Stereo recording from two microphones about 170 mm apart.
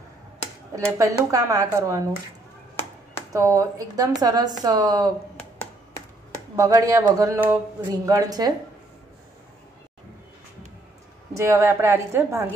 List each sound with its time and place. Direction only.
0.7 s speech: 20° right (ahead or behind)
3.3 s speech: 20° right (ahead or behind)
6.5 s speech: 20° right (ahead or behind)
11.3 s a woman's voice: 15° right (ahead or behind)